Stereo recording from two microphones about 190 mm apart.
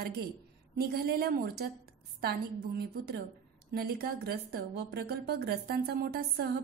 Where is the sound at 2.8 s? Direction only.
60° right (ahead or behind).